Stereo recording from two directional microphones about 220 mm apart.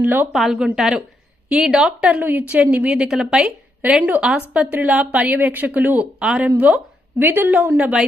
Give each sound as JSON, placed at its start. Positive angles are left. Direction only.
{"t": 0.0, "sound": "a woman's voice", "side_deg": -5}